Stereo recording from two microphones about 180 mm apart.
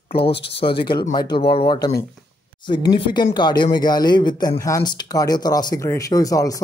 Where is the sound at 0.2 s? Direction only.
70° left (ahead or behind).